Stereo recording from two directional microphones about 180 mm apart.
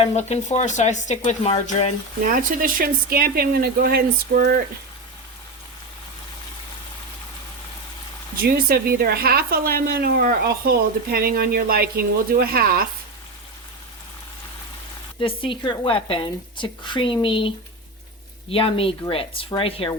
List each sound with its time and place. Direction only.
0.0 s speech: 40° left (ahead or behind)
2.2 s a woman's voice: 50° right (ahead or behind)
8.4 s a woman's voice: 55° right (ahead or behind)
15.2 s speech: 30° left (ahead or behind)
18.5 s speech: 30° left (ahead or behind)